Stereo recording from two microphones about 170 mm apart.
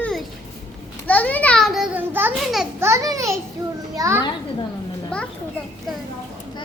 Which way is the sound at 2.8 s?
20° right (ahead or behind).